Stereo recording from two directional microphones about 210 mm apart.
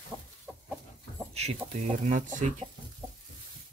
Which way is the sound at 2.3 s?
35° right (ahead or behind).